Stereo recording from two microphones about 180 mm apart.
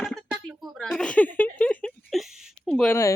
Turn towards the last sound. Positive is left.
turn(degrees=15)  # may be behind; listen again after turning